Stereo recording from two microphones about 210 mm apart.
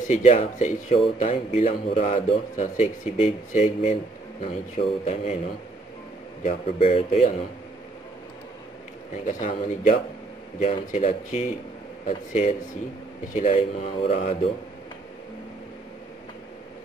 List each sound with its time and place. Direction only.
0.1 s a man's voice: 30° left (ahead or behind)
6.4 s speech: 30° left (ahead or behind)
9.1 s a man's voice: 40° left (ahead or behind)